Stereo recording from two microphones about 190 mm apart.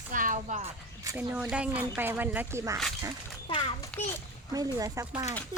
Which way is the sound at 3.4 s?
25° left (ahead or behind).